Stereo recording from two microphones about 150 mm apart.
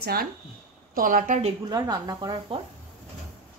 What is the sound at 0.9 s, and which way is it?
Speech, 65° right (ahead or behind).